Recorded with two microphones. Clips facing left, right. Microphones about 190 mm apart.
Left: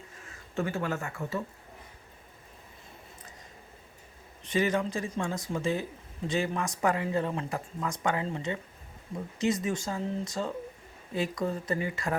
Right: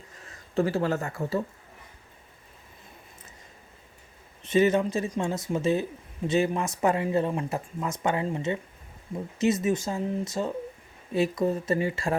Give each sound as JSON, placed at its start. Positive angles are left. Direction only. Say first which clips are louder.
{"t": 0.3, "sound": "speech", "louder": "right 6 dB", "side_deg": -35}
{"t": 4.4, "sound": "speech", "louder": "right 6 dB", "side_deg": -25}